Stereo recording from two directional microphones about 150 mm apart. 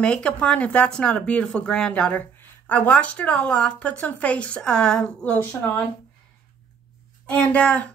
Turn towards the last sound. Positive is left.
turn(degrees=10)  # may be behind; listen again after turning